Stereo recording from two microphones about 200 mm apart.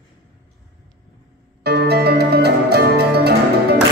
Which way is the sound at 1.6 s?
55° right (ahead or behind).